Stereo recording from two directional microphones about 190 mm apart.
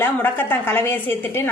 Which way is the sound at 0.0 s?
10° left (ahead or behind).